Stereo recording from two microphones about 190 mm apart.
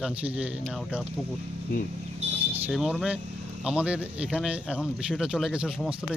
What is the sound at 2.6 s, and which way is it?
Speech, 5° right (ahead or behind).